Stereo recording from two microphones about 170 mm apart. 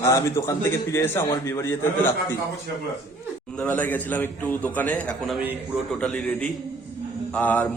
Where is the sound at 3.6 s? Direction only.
10° left (ahead or behind).